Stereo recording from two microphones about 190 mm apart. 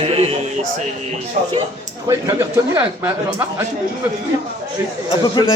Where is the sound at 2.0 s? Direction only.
15° right (ahead or behind).